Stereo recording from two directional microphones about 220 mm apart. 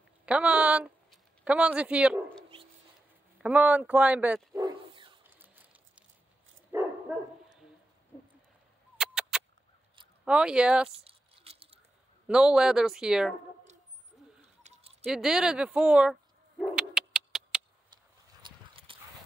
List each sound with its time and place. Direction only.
0.2 s speech: 5° right (ahead or behind)
3.4 s speech: 5° right (ahead or behind)
4.6 s dog: 20° right (ahead or behind)
5.4 s a sound: 5° right (ahead or behind)
6.7 s dog: 10° right (ahead or behind)
8.9 s a sound: centre (ahead or behind)
10.2 s speech: 5° right (ahead or behind)
10.9 s a sound: 25° right (ahead or behind)
12.3 s speech: 5° right (ahead or behind)
14.6 s a sound: 30° right (ahead or behind)
15.0 s bow-wow: centre (ahead or behind)
18.4 s horse: 25° right (ahead or behind)